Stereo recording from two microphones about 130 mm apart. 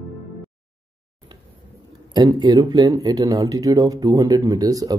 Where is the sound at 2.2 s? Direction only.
30° right (ahead or behind).